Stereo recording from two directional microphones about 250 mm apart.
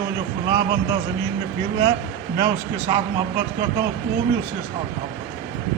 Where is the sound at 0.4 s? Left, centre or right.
Centre.